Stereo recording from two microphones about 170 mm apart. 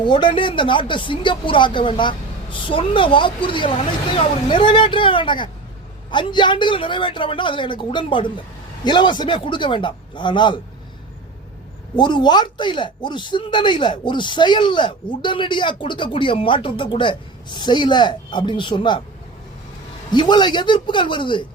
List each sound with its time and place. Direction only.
0.0 s speech: 25° left (ahead or behind)
11.9 s speech: 25° left (ahead or behind)
20.1 s speech: 25° left (ahead or behind)